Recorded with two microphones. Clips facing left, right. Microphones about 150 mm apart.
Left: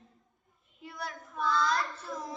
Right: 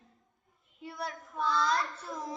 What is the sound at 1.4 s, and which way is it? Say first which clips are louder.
Speech: even; 25° right (ahead or behind).